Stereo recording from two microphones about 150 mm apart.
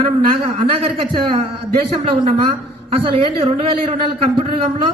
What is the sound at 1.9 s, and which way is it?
A man's voice, 35° right (ahead or behind).